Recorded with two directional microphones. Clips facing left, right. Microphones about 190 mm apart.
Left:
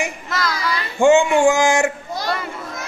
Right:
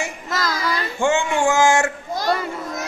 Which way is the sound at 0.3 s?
45° right (ahead or behind).